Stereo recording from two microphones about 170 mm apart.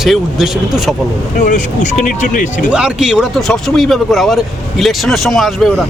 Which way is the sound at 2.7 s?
5° right (ahead or behind).